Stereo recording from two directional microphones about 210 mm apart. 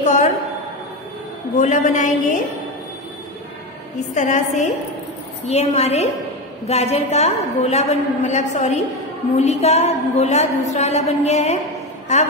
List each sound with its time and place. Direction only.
0.0 s a sound: 35° left (ahead or behind)
1.6 s a woman's voice: 35° left (ahead or behind)
4.1 s a woman's voice: 35° left (ahead or behind)